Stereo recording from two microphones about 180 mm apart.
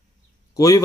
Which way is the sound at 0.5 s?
20° left (ahead or behind).